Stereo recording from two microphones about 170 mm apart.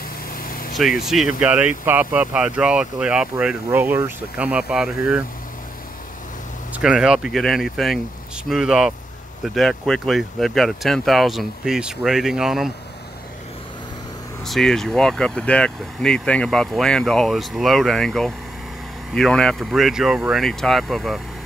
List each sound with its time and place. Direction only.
0.3 s vehicle: 55° left (ahead or behind)
0.7 s speech: centre (ahead or behind)
6.7 s speech: 5° right (ahead or behind)
14.4 s speech: 5° left (ahead or behind)